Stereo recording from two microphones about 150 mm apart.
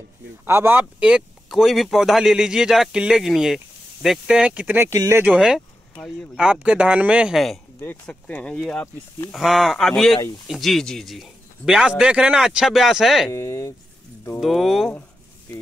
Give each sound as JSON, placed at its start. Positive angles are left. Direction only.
{"t": 0.5, "sound": "speech", "side_deg": -15}
{"t": 5.3, "sound": "speech", "side_deg": -5}
{"t": 7.8, "sound": "speech", "side_deg": 10}
{"t": 13.3, "sound": "speech", "side_deg": 20}
{"t": 14.4, "sound": "speech", "side_deg": 0}